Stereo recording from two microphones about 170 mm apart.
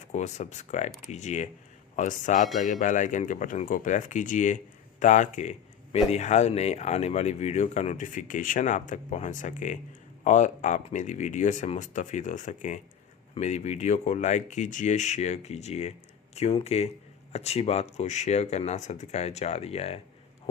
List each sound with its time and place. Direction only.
0.1 s speech: 45° left (ahead or behind)